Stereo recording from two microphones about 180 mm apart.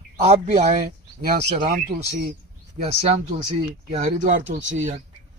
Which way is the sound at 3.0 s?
35° right (ahead or behind).